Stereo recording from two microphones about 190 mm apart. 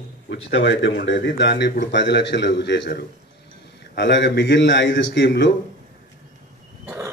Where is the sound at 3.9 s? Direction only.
70° left (ahead or behind).